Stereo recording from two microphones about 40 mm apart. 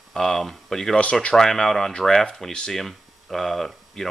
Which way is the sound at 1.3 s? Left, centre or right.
Centre.